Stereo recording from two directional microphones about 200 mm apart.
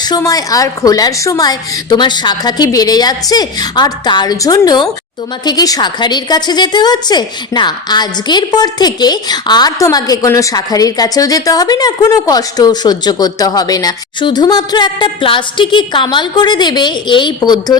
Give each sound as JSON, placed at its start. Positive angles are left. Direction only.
{"t": 0.0, "sound": "a woman's voice", "side_deg": 20}